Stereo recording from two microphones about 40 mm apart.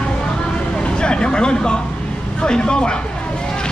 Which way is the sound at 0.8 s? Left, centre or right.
Left.